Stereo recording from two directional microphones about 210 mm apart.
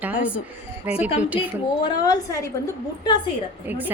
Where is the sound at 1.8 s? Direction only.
20° left (ahead or behind).